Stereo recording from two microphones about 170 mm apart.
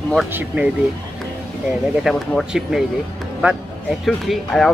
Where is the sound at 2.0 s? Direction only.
Centre (ahead or behind).